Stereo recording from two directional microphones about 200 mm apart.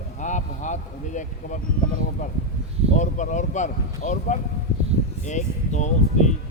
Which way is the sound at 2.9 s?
40° left (ahead or behind).